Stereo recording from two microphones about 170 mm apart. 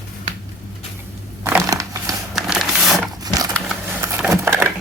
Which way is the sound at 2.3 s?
Centre (ahead or behind).